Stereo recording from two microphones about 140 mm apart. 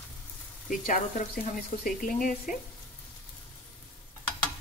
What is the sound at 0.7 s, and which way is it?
Speech, 70° left (ahead or behind).